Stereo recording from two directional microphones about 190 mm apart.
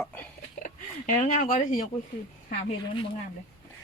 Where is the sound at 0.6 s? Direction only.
40° left (ahead or behind).